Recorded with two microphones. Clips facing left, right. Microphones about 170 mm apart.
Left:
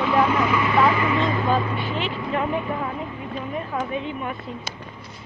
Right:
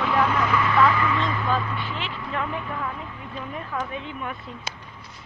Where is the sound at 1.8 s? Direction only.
15° left (ahead or behind).